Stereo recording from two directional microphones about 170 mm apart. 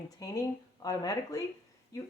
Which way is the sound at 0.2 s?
20° left (ahead or behind).